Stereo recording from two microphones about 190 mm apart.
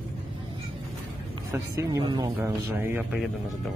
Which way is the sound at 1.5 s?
20° right (ahead or behind).